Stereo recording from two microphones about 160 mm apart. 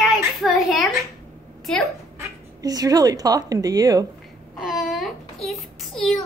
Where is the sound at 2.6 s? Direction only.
25° right (ahead or behind).